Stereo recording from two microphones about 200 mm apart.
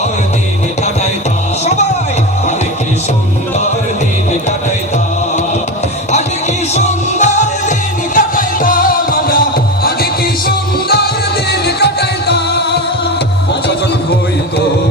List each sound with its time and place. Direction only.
6.7 s music: 35° left (ahead or behind); by 12.8 s 55° left (ahead or behind)